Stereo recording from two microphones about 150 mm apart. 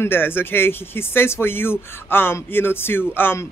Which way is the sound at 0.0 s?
15° left (ahead or behind).